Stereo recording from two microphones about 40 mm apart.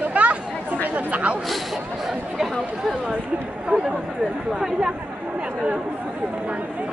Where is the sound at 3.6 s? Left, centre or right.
Centre.